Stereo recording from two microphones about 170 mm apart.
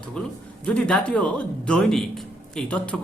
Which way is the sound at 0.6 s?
5° left (ahead or behind).